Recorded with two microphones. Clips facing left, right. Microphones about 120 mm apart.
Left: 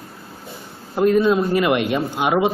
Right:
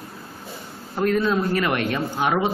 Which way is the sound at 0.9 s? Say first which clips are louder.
Left 5 dB; 15° left (ahead or behind).